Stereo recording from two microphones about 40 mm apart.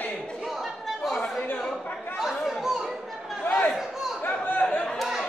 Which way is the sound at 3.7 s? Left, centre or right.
Centre.